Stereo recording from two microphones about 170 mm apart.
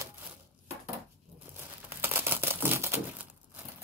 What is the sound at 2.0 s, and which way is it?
Crumpling, 10° right (ahead or behind).